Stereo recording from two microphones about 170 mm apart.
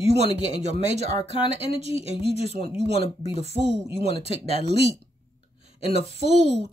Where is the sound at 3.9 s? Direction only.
35° left (ahead or behind).